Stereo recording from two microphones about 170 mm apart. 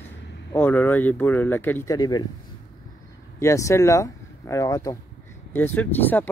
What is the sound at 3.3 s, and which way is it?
Speech, 15° left (ahead or behind).